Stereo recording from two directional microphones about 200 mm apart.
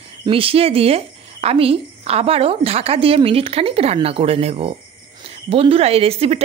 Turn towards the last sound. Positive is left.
turn(degrees=-30)  # may be behind; listen again after turning